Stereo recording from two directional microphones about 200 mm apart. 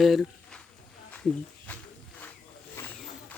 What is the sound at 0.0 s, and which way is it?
Speech, centre (ahead or behind).